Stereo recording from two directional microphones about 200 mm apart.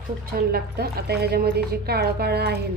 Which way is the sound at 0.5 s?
50° right (ahead or behind).